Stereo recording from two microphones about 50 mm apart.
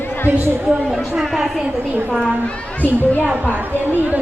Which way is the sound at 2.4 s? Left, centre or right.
Left.